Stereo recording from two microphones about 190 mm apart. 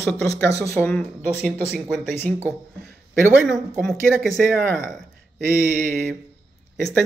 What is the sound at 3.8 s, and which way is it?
Speech, centre (ahead or behind).